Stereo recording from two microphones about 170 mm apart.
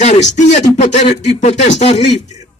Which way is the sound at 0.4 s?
45° left (ahead or behind).